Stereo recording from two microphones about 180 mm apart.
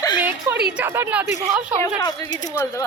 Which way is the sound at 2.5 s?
15° left (ahead or behind).